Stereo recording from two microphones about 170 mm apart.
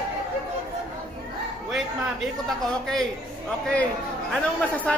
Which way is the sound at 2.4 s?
Centre (ahead or behind).